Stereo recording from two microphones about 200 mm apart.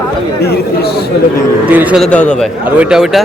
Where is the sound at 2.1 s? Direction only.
5° left (ahead or behind).